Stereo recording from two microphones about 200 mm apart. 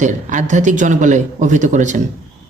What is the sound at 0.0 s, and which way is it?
Speech, 40° right (ahead or behind).